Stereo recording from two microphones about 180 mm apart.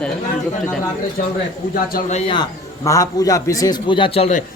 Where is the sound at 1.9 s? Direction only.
50° left (ahead or behind).